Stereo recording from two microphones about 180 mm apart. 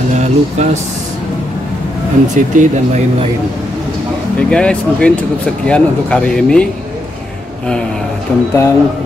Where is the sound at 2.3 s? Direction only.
45° right (ahead or behind).